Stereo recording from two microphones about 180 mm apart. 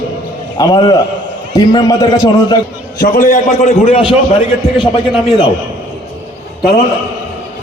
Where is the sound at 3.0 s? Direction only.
50° left (ahead or behind).